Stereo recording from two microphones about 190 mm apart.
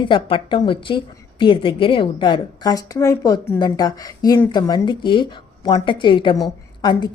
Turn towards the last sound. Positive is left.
turn(degrees=20)  # may be behind; listen again after turning